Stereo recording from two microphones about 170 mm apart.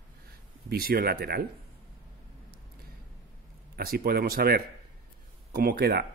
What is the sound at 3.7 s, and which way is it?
Speech, 60° right (ahead or behind).